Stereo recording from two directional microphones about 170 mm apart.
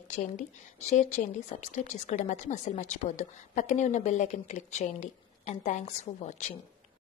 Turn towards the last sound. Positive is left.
turn(degrees=40)  # may be behind; listen again after turning